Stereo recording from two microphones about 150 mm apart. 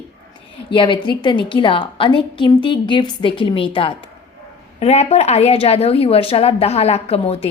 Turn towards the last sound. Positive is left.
turn(degrees=40)  # may be behind; listen again after turning